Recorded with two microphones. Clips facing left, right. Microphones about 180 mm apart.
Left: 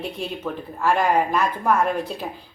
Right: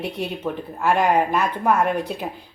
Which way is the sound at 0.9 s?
15° right (ahead or behind).